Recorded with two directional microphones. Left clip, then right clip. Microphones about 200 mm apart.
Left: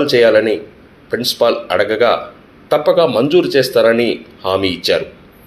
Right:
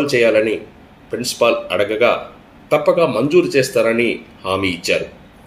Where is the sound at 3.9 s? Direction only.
50° left (ahead or behind).